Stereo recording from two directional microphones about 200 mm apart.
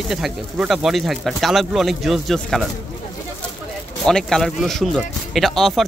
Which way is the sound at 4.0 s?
5° left (ahead or behind).